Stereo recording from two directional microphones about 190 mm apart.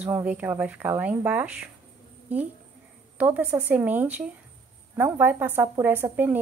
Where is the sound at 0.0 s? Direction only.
5° right (ahead or behind).